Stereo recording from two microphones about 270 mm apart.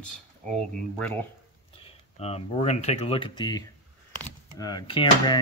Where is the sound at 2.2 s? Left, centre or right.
Left.